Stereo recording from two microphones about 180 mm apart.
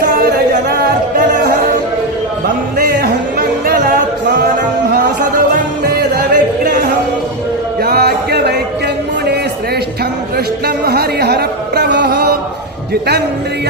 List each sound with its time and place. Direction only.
2.7 s music: 55° right (ahead or behind)
5.9 s music: 60° right (ahead or behind)
10.8 s music: 60° right (ahead or behind)
12.9 s a sound: 60° right (ahead or behind)